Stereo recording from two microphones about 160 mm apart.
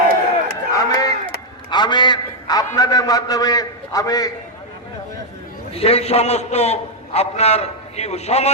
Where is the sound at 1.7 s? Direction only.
30° left (ahead or behind).